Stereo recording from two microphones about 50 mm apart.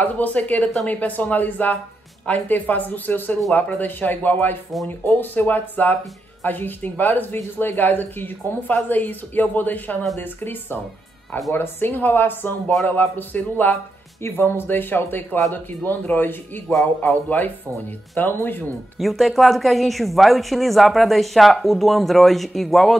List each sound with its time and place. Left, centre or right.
0.0 s speech: left
14.2 s speech: left
18.9 s speech: centre